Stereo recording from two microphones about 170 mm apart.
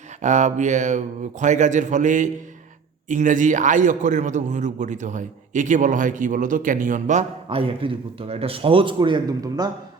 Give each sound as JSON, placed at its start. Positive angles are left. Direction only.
{"t": 0.2, "sound": "a man's voice", "side_deg": -45}